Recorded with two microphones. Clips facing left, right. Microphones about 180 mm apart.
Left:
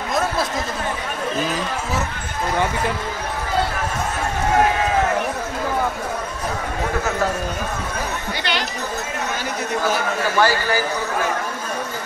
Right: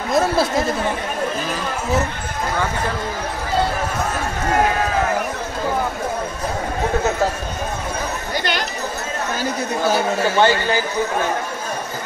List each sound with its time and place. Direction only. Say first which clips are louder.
9.8 s a man's voice: right 5 dB; 25° right (ahead or behind)